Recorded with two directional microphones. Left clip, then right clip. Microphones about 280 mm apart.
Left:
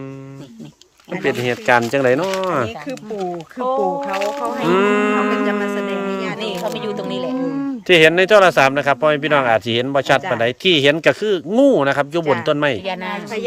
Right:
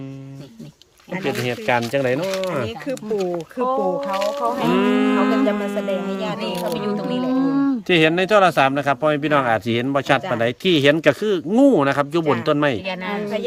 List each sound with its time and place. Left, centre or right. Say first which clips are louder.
1.2 s speech: left 4 dB; centre
4.1 s speech: even; centre
6.4 s speech: left 1 dB; left
7.4 s speech: right 3 dB; right
7.9 s speech: left 7 dB; centre
12.8 s speech: left 2 dB; centre